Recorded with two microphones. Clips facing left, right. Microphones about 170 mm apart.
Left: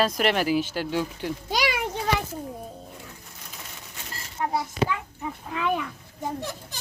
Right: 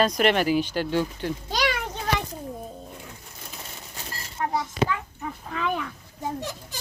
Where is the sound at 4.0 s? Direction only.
35° right (ahead or behind).